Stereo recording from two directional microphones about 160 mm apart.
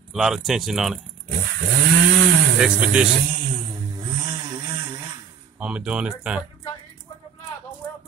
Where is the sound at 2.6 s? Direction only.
5° right (ahead or behind).